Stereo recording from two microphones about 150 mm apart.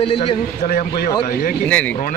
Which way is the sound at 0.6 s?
70° left (ahead or behind).